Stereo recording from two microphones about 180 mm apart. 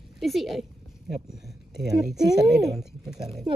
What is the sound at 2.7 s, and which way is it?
Speech, 5° right (ahead or behind).